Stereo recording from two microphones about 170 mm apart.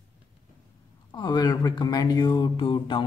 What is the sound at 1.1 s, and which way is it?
Speech, 25° left (ahead or behind).